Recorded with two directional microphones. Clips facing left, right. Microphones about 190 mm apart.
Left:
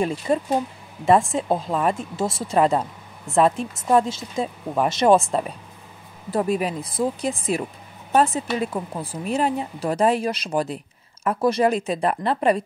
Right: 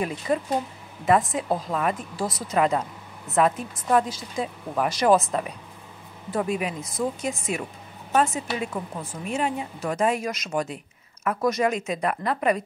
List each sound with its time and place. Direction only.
0.0 s a woman's voice: 30° left (ahead or behind)